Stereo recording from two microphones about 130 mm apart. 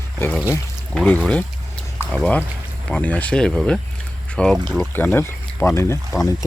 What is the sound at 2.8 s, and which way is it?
Speech, 10° left (ahead or behind).